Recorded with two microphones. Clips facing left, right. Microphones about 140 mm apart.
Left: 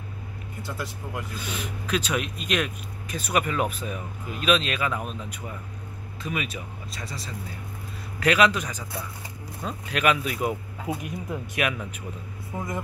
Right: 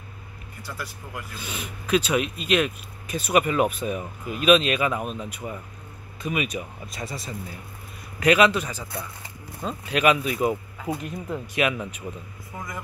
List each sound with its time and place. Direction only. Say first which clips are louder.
0.6 s speech: left 2 dB; 20° left (ahead or behind)
1.9 s speech: right 5 dB; 10° right (ahead or behind)
8.2 s speech: right 2 dB; 5° right (ahead or behind)
11.0 s speech: right 1 dB; 15° left (ahead or behind)
11.5 s speech: right 4 dB; 5° right (ahead or behind)
12.5 s speech: left 4 dB; 30° left (ahead or behind)